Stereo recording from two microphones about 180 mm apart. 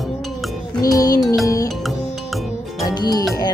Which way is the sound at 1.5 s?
20° left (ahead or behind).